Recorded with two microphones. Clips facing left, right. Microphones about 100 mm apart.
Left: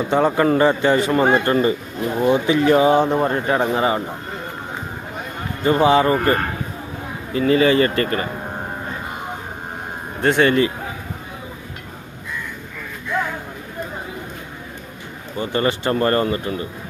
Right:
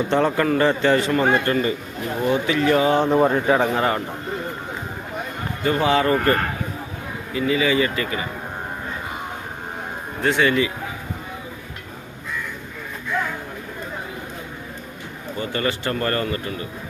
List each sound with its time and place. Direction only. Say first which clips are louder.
0.1 s a man's voice: left 4 dB; 10° left (ahead or behind)
1.2 s speech: left 3 dB; 25° left (ahead or behind)
3.0 s speech: right 1 dB; 5° right (ahead or behind)
3.7 s a man's voice: left 2 dB; 10° left (ahead or behind)
5.6 s speech: left 4 dB; 25° left (ahead or behind)
7.3 s a man's voice: left 5 dB; 45° left (ahead or behind)
10.2 s a man's voice: left 3 dB; 50° left (ahead or behind)
15.4 s speech: left 4 dB; 30° left (ahead or behind)